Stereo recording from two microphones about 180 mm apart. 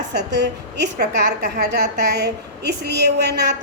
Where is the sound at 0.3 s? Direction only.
70° right (ahead or behind).